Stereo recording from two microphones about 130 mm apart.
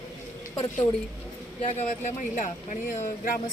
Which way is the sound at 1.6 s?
55° left (ahead or behind).